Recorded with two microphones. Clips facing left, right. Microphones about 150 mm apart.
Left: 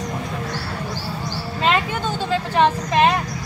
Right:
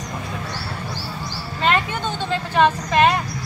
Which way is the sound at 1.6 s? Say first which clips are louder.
Even; 5° left (ahead or behind).